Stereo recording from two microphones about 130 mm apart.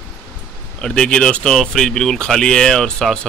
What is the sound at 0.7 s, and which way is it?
Speech, 5° left (ahead or behind).